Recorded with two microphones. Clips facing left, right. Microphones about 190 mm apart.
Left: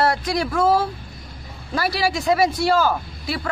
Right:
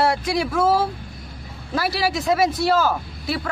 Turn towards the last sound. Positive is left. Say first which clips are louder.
# right 1 dB
turn(degrees=0)  # may be behind; listen again after turning